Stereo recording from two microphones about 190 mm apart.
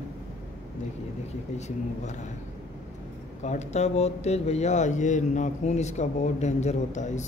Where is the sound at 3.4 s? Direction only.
35° left (ahead or behind).